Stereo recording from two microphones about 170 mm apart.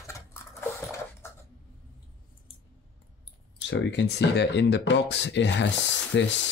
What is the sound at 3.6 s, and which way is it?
Speech, 85° left.